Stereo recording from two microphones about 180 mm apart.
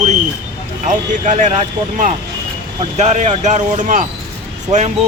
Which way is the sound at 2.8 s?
40° right (ahead or behind).